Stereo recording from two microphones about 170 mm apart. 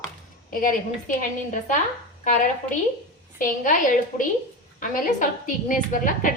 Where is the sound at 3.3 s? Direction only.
50° left (ahead or behind).